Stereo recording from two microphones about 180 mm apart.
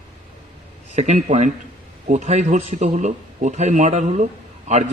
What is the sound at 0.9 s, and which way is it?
A man's voice, 40° right (ahead or behind).